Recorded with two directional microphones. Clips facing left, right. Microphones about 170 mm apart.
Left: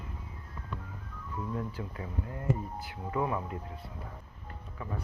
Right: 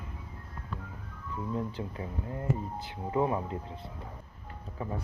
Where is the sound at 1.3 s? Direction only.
25° right (ahead or behind).